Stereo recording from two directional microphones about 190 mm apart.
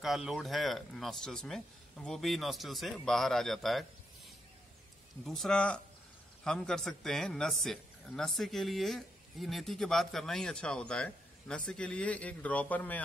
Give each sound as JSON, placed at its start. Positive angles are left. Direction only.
{"t": 0.0, "sound": "a man's voice", "side_deg": 0}
{"t": 5.2, "sound": "a man's voice", "side_deg": 0}